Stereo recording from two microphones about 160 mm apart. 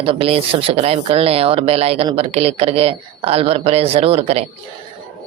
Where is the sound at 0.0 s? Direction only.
35° right (ahead or behind).